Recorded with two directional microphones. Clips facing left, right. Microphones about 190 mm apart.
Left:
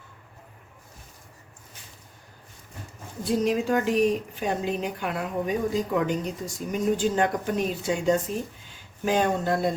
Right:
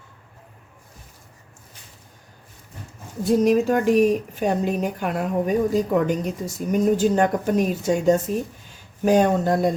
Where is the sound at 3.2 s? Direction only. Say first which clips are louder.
Right 6 dB; 45° right (ahead or behind).